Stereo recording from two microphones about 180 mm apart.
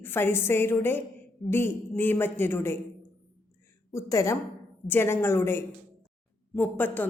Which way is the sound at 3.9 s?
15° left (ahead or behind).